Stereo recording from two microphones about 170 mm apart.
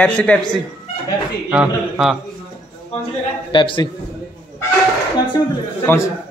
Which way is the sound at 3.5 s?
30° left (ahead or behind).